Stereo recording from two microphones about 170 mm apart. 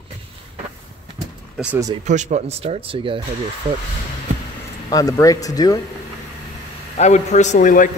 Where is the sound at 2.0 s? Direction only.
45° right (ahead or behind).